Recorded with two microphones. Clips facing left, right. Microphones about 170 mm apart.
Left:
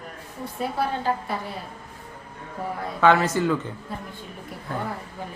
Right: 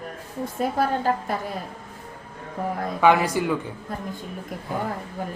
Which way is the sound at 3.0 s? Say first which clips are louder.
Even; 15° right (ahead or behind).